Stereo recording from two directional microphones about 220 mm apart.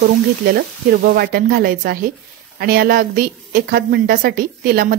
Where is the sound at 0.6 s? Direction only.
45° right (ahead or behind).